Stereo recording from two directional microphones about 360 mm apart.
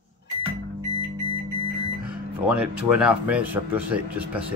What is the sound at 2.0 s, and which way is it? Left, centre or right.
Speech, centre.